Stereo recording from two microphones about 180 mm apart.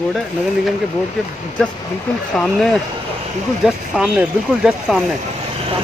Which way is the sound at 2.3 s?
5° left (ahead or behind).